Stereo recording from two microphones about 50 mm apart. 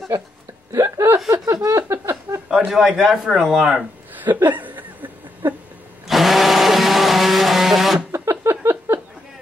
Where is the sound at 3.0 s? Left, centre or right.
Centre.